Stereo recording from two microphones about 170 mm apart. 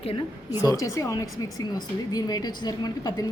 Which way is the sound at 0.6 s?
20° left (ahead or behind).